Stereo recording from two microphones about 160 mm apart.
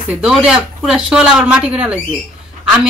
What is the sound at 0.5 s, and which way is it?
Speech, 5° right (ahead or behind).